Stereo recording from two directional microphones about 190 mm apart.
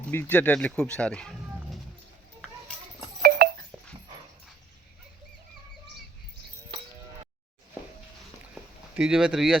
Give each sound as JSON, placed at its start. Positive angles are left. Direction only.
{"t": 0.1, "sound": "speech", "side_deg": 10}
{"t": 3.2, "sound": "a sound", "side_deg": -50}
{"t": 9.0, "sound": "speech", "side_deg": -5}